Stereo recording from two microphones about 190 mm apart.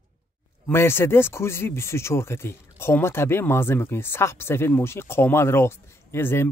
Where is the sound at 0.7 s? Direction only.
10° left (ahead or behind).